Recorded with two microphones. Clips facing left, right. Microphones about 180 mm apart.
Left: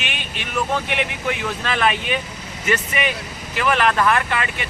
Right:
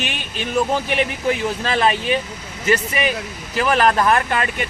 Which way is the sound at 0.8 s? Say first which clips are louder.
Right 4 dB; 35° right (ahead or behind).